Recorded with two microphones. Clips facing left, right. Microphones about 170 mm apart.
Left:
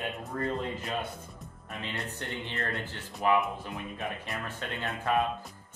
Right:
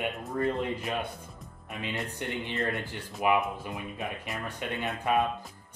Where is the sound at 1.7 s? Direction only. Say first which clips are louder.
Right 3 dB; 15° right (ahead or behind).